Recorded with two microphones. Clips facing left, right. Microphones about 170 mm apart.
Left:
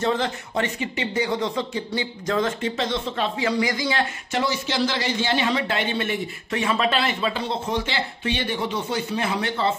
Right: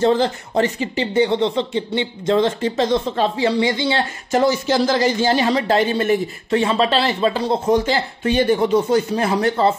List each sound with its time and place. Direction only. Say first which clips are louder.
0.0 s speech: right 7 dB; 35° right (ahead or behind)
4.3 s speech: right 12 dB; 45° right (ahead or behind)